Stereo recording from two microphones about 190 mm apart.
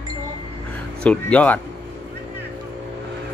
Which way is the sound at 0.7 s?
5° left (ahead or behind).